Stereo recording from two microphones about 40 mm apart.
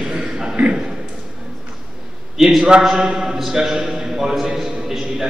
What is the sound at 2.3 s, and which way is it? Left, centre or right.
A man's voice, centre.